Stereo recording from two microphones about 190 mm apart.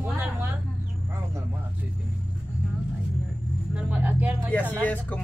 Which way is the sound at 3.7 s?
10° right (ahead or behind).